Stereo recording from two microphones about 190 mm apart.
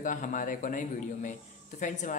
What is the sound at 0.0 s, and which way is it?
A man's voice, 45° left (ahead or behind).